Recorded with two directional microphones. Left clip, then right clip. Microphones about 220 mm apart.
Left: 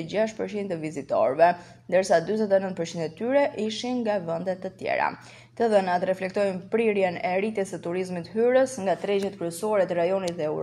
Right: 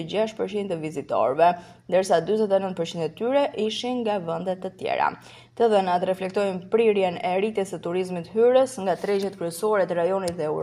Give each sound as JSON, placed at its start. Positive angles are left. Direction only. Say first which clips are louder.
{"t": 0.0, "sound": "speech", "louder": "right 1 dB", "side_deg": -25}